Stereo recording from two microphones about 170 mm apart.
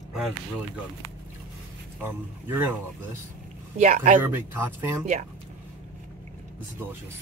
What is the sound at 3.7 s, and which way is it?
Speech, 45° right (ahead or behind).